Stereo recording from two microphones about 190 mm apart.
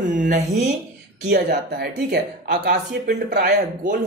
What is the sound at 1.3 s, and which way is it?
Speech, 60° right (ahead or behind).